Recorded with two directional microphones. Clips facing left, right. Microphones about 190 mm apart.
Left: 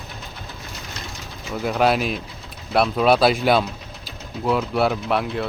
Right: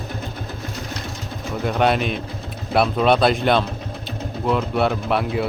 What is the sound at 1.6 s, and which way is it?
Speech, 5° left (ahead or behind).